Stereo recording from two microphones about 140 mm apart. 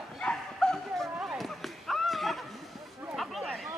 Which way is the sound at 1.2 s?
5° right (ahead or behind).